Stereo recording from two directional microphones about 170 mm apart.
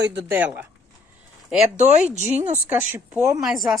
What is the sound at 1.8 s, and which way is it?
Speech, 45° right (ahead or behind).